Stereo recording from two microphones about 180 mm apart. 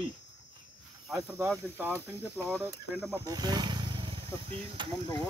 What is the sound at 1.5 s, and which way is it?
Speech, 10° right (ahead or behind).